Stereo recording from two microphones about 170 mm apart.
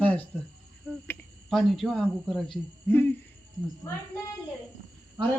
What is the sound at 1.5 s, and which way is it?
Speech, centre (ahead or behind).